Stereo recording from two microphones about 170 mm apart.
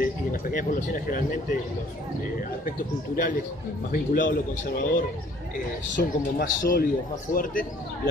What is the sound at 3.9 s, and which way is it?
Speech, 55° left (ahead or behind).